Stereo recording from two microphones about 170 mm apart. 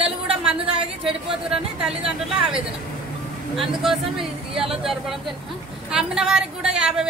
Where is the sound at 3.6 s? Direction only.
Centre (ahead or behind).